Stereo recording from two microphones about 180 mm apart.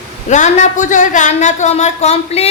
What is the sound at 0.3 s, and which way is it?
A woman's voice, 40° left (ahead or behind).